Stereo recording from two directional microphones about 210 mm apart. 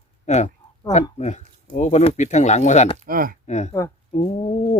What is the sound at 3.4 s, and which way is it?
Speech, 35° left (ahead or behind).